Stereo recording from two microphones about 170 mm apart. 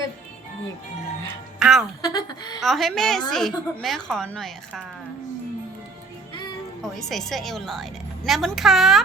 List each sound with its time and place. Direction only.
1.5 s speech: 5° right (ahead or behind)
2.0 s speech: 25° left (ahead or behind)
2.6 s a woman's voice: centre (ahead or behind)
6.8 s a woman's voice: centre (ahead or behind)